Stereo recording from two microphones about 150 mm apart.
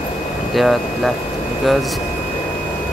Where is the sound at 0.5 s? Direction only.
Centre (ahead or behind).